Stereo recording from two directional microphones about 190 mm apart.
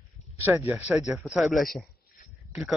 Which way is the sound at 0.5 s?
15° right (ahead or behind).